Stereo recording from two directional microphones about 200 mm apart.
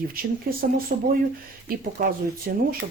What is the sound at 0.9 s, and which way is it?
Speech, 45° right (ahead or behind).